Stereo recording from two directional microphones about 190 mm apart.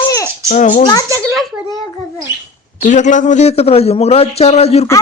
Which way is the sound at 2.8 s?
40° left (ahead or behind).